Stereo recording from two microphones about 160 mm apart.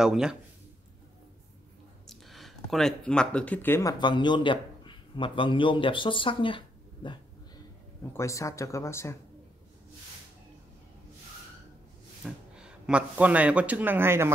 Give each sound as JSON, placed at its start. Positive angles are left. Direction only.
{"t": 0.0, "sound": "speech", "side_deg": -5}
{"t": 2.0, "sound": "speech", "side_deg": 0}
{"t": 4.0, "sound": "a man's voice", "side_deg": 30}
{"t": 8.1, "sound": "speech", "side_deg": 20}
{"t": 12.3, "sound": "speech", "side_deg": -5}